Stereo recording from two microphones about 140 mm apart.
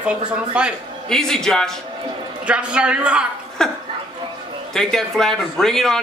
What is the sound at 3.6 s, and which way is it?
A man's voice, 5° left (ahead or behind).